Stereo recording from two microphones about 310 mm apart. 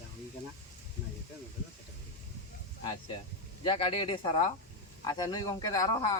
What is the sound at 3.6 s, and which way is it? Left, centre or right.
Speech, centre.